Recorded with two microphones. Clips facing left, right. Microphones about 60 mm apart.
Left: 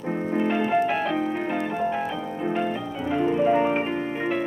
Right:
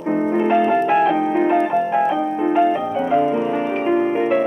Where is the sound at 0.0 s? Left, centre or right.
Right.